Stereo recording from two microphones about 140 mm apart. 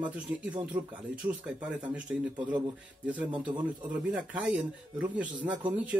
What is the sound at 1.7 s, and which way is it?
Speech, 10° right (ahead or behind).